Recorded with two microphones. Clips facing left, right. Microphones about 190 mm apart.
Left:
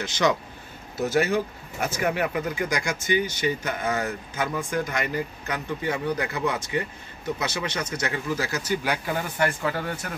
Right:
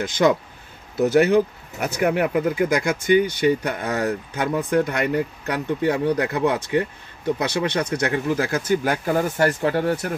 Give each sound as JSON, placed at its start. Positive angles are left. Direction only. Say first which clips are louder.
{"t": 0.0, "sound": "speech", "louder": "right 5 dB", "side_deg": -50}